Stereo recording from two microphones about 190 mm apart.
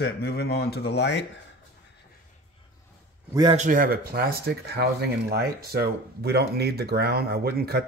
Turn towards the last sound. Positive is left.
turn(degrees=-55)  # may be behind; listen again after turning